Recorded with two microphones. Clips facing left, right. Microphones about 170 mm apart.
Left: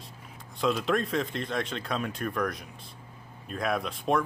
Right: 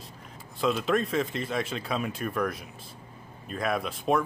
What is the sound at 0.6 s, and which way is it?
Speech, centre (ahead or behind).